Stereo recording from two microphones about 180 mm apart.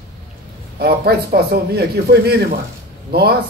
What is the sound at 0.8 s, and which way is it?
A man's voice, 60° right (ahead or behind).